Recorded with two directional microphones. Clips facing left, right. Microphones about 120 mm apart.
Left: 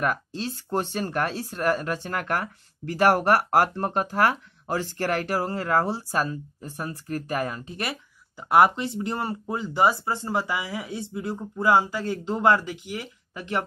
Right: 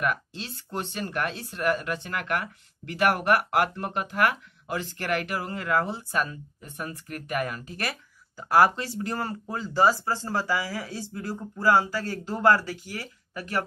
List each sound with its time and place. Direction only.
0.0 s speech: 35° left (ahead or behind)